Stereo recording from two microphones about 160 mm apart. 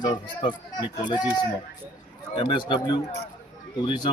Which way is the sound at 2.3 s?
30° left (ahead or behind).